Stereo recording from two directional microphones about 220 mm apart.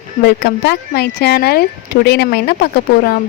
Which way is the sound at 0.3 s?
50° left (ahead or behind).